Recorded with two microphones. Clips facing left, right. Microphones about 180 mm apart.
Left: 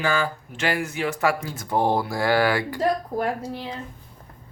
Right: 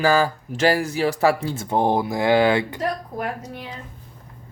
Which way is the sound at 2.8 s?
30° left (ahead or behind).